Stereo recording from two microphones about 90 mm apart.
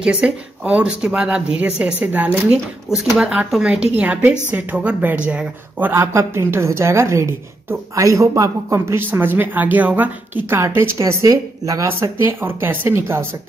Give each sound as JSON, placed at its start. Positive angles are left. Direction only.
{"t": 0.0, "sound": "speech", "side_deg": -10}
{"t": 5.9, "sound": "a woman's voice", "side_deg": -30}